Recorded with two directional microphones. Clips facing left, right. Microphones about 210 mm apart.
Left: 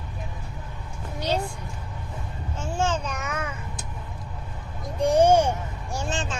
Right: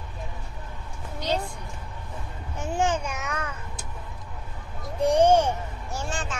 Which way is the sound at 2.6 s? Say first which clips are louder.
Right 1 dB; 15° right (ahead or behind).